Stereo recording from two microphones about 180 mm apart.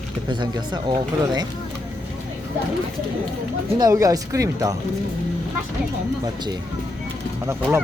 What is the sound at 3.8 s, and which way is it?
Speech, 20° right (ahead or behind).